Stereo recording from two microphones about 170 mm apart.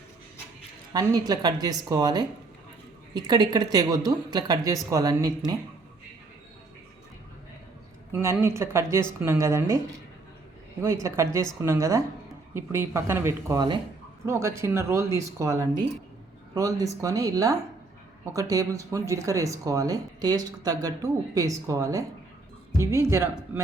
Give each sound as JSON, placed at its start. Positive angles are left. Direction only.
{"t": 0.9, "sound": "speech", "side_deg": -20}
{"t": 8.1, "sound": "speech", "side_deg": -15}
{"t": 11.0, "sound": "speech", "side_deg": -20}